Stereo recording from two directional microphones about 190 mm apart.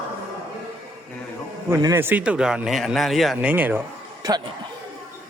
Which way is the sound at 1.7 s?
15° right (ahead or behind).